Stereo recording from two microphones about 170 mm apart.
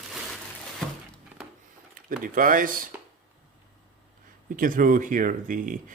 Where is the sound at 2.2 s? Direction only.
50° right (ahead or behind).